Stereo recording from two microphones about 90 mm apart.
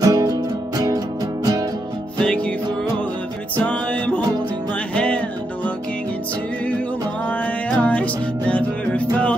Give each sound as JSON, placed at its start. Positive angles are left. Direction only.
{"t": 0.0, "sound": "music", "side_deg": -45}
{"t": 2.1, "sound": "music", "side_deg": 10}
{"t": 3.5, "sound": "music", "side_deg": 15}
{"t": 7.2, "sound": "music", "side_deg": 15}